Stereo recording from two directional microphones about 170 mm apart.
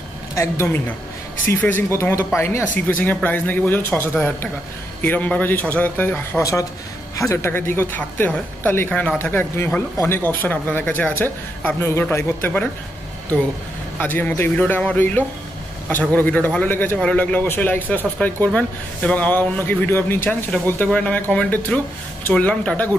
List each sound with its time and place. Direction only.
0.3 s a man's voice: 15° left (ahead or behind)
13.9 s a man's voice: 10° left (ahead or behind)